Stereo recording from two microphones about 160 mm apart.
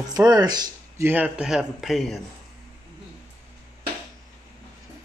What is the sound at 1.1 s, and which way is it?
A man's voice, 10° right (ahead or behind).